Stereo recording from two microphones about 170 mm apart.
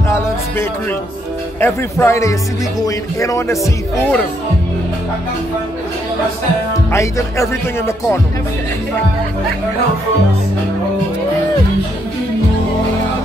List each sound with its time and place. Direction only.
1.6 s speech: 15° left (ahead or behind)
6.9 s speech: 15° left (ahead or behind)